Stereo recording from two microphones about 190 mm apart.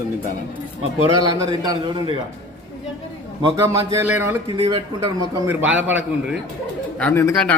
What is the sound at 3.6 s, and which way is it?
Speech, 15° right (ahead or behind).